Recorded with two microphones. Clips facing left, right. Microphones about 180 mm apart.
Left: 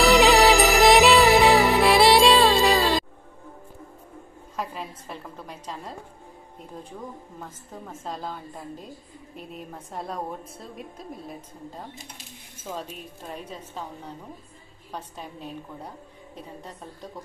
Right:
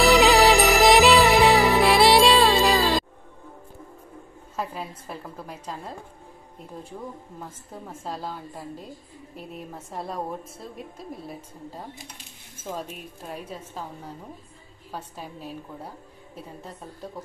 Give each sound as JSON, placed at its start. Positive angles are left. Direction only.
{"t": 0.0, "sound": "music", "side_deg": 0}
{"t": 4.6, "sound": "a woman's voice", "side_deg": -5}
{"t": 7.3, "sound": "a woman's voice", "side_deg": -5}
{"t": 12.6, "sound": "a woman's voice", "side_deg": -10}